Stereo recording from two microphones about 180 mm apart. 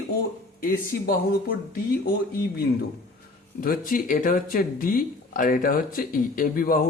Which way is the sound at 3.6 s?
50° left (ahead or behind).